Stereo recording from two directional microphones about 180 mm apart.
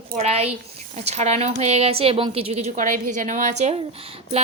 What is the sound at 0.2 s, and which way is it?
A woman's voice, 35° right (ahead or behind).